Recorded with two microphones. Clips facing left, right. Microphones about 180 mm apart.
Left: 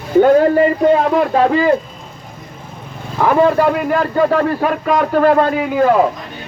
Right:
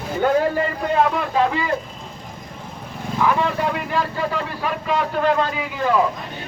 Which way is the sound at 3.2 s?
50° left (ahead or behind).